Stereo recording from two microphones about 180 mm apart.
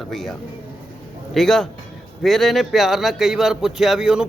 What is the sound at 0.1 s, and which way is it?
Speech, centre (ahead or behind).